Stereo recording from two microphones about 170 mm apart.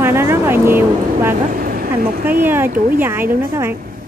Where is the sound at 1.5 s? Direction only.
60° right (ahead or behind).